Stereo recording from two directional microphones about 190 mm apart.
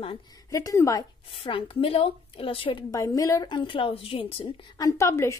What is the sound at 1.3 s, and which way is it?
A woman's voice, 30° left (ahead or behind).